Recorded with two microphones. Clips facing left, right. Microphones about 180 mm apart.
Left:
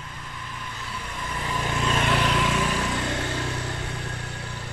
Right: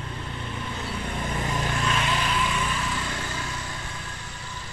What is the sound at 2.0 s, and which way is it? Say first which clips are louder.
Vehicle: left 3 dB; 65° left (ahead or behind).